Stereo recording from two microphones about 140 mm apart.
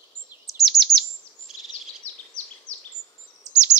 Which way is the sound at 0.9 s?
Centre (ahead or behind).